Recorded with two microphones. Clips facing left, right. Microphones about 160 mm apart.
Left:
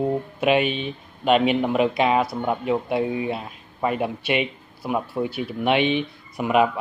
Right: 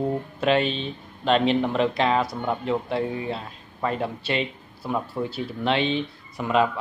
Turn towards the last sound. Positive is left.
turn(degrees=15)  # may be behind; listen again after turning